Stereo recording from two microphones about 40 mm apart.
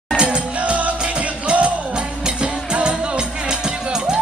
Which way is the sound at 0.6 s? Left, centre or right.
Right.